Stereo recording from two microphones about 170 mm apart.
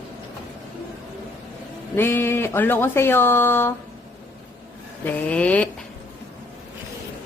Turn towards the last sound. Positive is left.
turn(degrees=10)  # may be behind; listen again after turning